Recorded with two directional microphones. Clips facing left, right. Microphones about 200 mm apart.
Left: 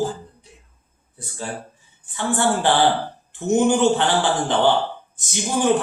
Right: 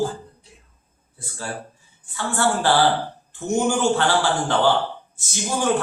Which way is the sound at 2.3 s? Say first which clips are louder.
Left 1 dB; 20° left (ahead or behind).